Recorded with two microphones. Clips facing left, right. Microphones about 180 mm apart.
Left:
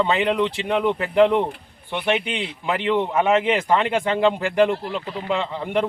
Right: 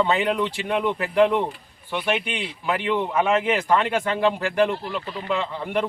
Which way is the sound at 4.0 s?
25° left (ahead or behind).